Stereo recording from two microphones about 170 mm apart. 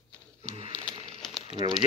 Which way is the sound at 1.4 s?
35° left (ahead or behind).